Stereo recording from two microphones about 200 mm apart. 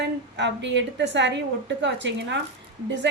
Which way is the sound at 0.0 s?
60° right (ahead or behind).